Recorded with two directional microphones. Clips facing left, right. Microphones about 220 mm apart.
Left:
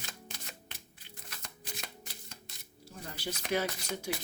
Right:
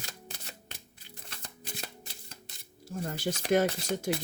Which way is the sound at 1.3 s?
30° right (ahead or behind).